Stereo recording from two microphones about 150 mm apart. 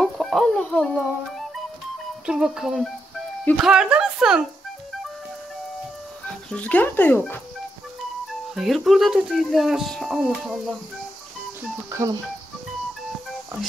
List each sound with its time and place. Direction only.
0.0 s chicken: centre (ahead or behind)
2.2 s speech: 5° right (ahead or behind)
6.2 s speech: 10° left (ahead or behind)
8.5 s speech: centre (ahead or behind)
11.9 s speech: 20° right (ahead or behind)